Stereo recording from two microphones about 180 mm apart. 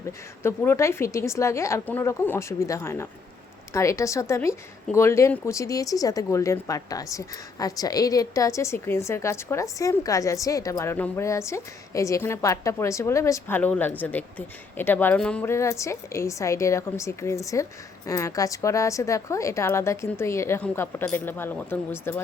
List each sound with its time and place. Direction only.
0.4 s a woman's voice: 15° left (ahead or behind)